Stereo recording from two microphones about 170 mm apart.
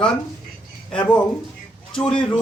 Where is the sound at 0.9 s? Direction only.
10° left (ahead or behind).